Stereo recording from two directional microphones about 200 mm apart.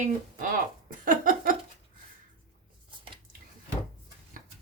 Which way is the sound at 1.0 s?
45° right (ahead or behind).